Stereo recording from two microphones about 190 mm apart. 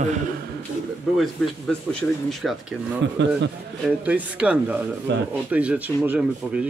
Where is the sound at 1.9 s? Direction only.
Centre (ahead or behind).